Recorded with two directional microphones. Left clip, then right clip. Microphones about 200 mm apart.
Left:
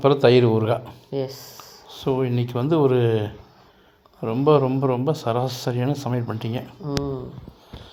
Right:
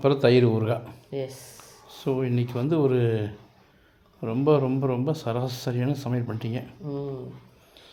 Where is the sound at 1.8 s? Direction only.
Centre (ahead or behind).